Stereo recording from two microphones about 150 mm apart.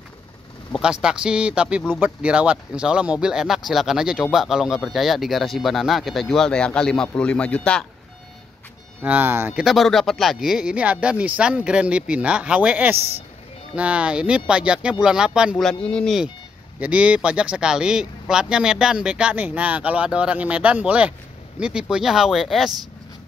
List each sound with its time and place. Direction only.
0.7 s speech: 5° right (ahead or behind)
9.0 s speech: 10° right (ahead or behind)
15.5 s a man's voice: 5° left (ahead or behind)
16.8 s speech: 5° right (ahead or behind)